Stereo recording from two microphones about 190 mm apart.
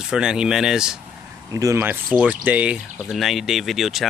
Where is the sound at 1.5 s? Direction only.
15° right (ahead or behind).